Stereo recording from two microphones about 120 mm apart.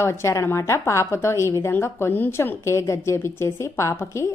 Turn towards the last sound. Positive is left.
turn(degrees=25)  # may be behind; listen again after turning